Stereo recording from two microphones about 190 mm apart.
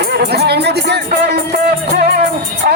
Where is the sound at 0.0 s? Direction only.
55° right (ahead or behind).